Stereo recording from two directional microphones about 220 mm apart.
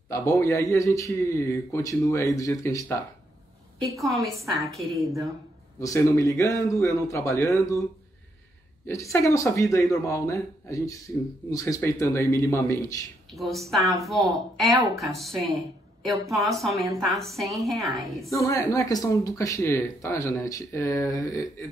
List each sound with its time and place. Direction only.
0.1 s speech: 15° left (ahead or behind)
4.5 s a woman's voice: centre (ahead or behind)
4.9 s a woman's voice: 15° right (ahead or behind)
5.8 s speech: 15° left (ahead or behind)
8.8 s speech: 15° left (ahead or behind)
13.3 s a woman's voice: centre (ahead or behind)
15.0 s a woman's voice: centre (ahead or behind)
18.4 s speech: 15° left (ahead or behind)